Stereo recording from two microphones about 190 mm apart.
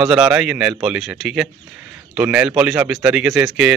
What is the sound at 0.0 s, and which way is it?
Speech, 5° right (ahead or behind).